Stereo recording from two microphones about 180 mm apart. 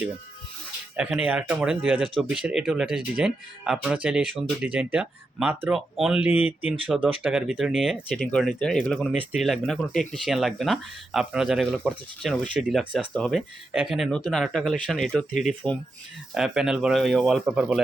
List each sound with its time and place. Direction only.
0.9 s speech: 5° right (ahead or behind)
15.3 s speech: 45° left (ahead or behind)
16.3 s speech: 5° right (ahead or behind)